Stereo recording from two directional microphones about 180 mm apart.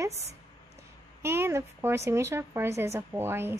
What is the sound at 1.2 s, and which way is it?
Speech, 15° right (ahead or behind).